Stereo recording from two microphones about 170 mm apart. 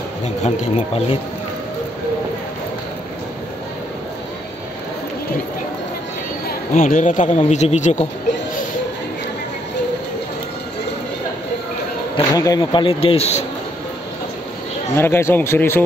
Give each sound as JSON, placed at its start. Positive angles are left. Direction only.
{"t": 0.4, "sound": "speech", "side_deg": 35}
{"t": 6.7, "sound": "speech", "side_deg": 45}
{"t": 12.2, "sound": "speech", "side_deg": 20}
{"t": 15.0, "sound": "speech", "side_deg": 15}